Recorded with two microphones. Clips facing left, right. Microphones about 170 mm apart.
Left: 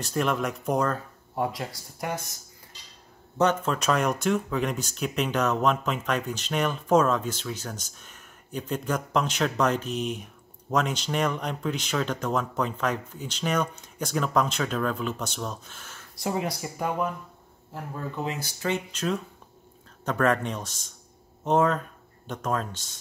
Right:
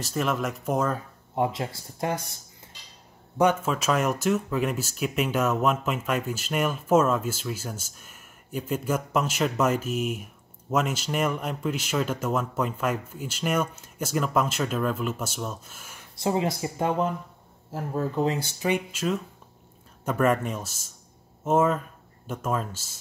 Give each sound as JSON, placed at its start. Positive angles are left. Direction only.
{"t": 0.0, "sound": "speech", "side_deg": 0}
{"t": 0.9, "sound": "speech", "side_deg": -20}
{"t": 3.3, "sound": "speech", "side_deg": -10}
{"t": 16.2, "sound": "speech", "side_deg": -25}
{"t": 17.7, "sound": "speech", "side_deg": -40}
{"t": 18.7, "sound": "speech", "side_deg": -5}